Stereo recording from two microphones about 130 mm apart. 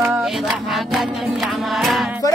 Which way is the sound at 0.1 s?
Centre (ahead or behind).